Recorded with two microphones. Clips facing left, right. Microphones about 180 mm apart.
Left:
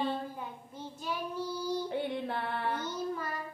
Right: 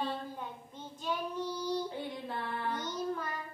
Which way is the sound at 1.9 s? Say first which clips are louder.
Left 5 dB; 65° left (ahead or behind).